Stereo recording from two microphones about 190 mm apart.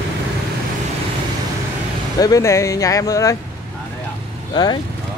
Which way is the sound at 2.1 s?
20° left (ahead or behind).